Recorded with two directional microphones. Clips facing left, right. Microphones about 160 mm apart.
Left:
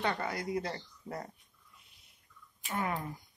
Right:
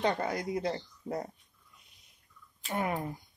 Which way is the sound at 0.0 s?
20° right (ahead or behind).